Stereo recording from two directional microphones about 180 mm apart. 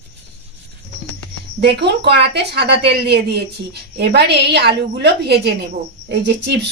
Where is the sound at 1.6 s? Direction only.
70° right (ahead or behind).